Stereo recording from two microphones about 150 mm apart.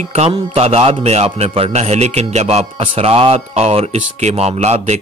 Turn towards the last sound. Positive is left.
turn(degrees=-45)  # may be behind; listen again after turning